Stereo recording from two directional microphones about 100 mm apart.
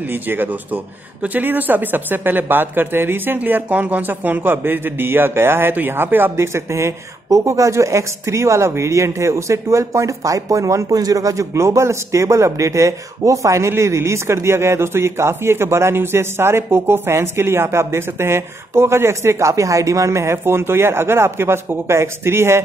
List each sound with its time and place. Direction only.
0.0 s speech: 20° right (ahead or behind)